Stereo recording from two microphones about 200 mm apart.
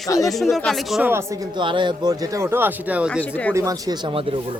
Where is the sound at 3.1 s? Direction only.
5° left (ahead or behind).